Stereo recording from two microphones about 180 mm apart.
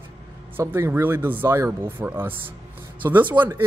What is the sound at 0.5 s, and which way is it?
Speech, 10° right (ahead or behind).